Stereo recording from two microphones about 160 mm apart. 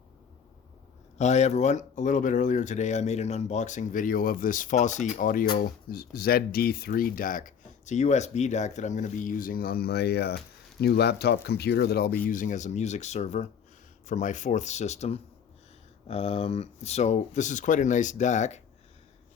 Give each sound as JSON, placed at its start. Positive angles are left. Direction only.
{"t": 1.2, "sound": "speech", "side_deg": 45}
{"t": 5.1, "sound": "speech", "side_deg": 60}